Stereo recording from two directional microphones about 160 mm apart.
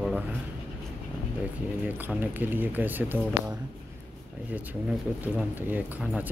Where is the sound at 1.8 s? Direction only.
10° right (ahead or behind).